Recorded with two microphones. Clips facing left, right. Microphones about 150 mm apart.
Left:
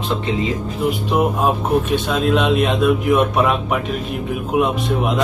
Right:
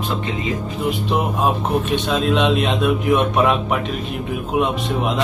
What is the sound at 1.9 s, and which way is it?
Speech, 5° left (ahead or behind).